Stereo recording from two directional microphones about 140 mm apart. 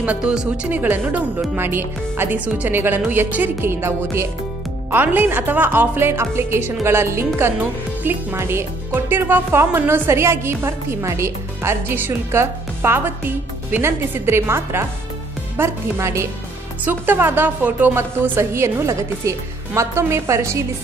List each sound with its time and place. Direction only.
0.0 s a woman's voice: 10° right (ahead or behind)